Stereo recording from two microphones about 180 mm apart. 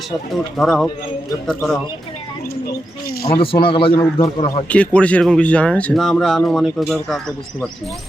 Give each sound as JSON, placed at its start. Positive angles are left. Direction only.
{"t": 0.5, "sound": "speech", "side_deg": 0}
{"t": 3.2, "sound": "a man's voice", "side_deg": 30}
{"t": 4.7, "sound": "speech", "side_deg": 5}